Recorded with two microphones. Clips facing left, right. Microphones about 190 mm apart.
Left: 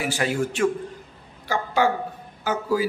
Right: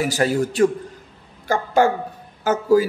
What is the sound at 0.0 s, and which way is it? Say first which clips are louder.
A man's voice: right 5 dB; 40° right (ahead or behind).